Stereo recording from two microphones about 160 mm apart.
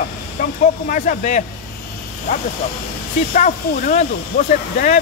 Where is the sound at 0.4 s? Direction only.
60° left (ahead or behind).